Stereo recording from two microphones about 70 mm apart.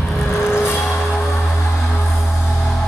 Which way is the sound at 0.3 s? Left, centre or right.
Left.